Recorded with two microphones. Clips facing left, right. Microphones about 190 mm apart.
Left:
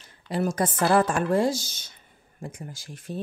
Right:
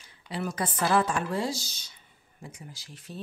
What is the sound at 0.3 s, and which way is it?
Speech, 45° left (ahead or behind).